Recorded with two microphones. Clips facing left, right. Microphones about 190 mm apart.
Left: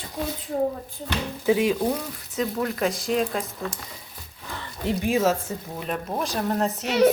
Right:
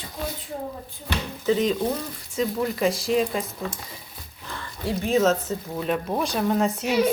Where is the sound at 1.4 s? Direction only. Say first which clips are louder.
Left 1 dB; 10° left (ahead or behind).